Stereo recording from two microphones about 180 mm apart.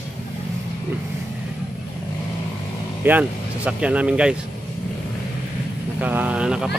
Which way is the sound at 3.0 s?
10° right (ahead or behind).